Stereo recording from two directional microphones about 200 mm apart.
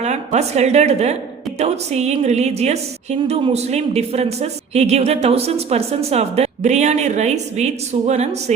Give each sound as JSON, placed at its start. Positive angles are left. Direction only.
{"t": 0.0, "sound": "a woman's voice", "side_deg": -35}